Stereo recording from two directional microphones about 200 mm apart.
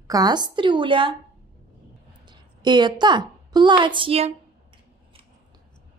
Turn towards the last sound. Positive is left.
turn(degrees=-30)  # may be behind; listen again after turning